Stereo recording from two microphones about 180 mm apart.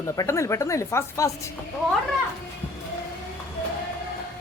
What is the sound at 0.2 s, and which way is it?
Speech, 15° left (ahead or behind).